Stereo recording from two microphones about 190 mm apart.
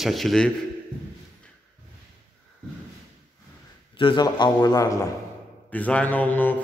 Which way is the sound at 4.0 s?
25° left (ahead or behind).